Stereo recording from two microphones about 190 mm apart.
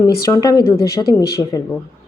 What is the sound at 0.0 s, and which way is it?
Speech, 20° left (ahead or behind).